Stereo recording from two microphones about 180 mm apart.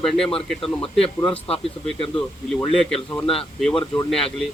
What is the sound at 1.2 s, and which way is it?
Speech, 10° left (ahead or behind).